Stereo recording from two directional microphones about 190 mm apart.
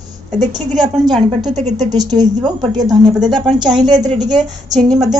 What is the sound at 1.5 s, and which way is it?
Speech, 40° right (ahead or behind).